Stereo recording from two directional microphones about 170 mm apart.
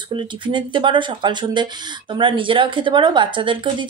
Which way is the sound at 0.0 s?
30° right (ahead or behind).